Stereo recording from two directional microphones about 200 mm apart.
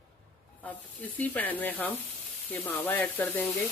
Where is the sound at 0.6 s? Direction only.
10° left (ahead or behind).